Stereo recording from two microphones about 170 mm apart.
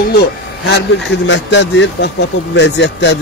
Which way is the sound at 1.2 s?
90° left.